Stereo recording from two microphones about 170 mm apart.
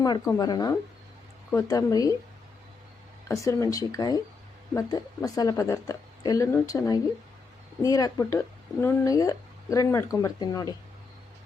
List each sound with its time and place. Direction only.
0.0 s speech: 20° left (ahead or behind)
3.2 s speech: 15° left (ahead or behind)